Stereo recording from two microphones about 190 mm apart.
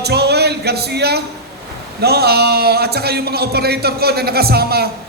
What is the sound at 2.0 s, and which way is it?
A man's voice, 55° right (ahead or behind).